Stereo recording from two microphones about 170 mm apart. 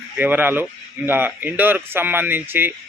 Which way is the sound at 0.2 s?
10° right (ahead or behind).